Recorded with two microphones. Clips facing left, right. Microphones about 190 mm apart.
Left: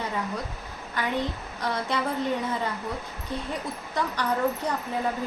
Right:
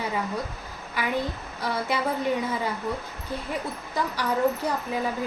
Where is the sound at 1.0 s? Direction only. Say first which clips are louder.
Even; 10° right (ahead or behind).